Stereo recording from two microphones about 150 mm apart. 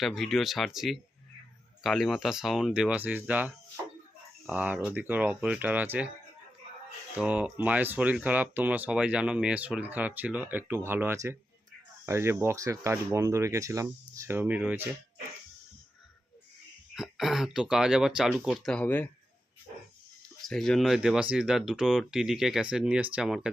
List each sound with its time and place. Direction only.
0.0 s speech: centre (ahead or behind)
7.2 s speech: 10° right (ahead or behind)
16.9 s speech: centre (ahead or behind)
20.4 s speech: 5° left (ahead or behind)